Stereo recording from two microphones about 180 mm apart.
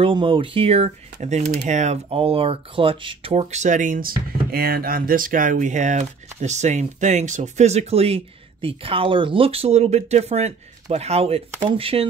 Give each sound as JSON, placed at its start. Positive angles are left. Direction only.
{"t": 0.0, "sound": "speech", "side_deg": -30}